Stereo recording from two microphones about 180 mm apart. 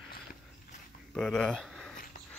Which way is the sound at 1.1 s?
Centre (ahead or behind).